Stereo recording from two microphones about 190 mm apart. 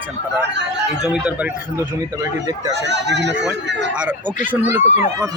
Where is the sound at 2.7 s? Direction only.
65° right (ahead or behind).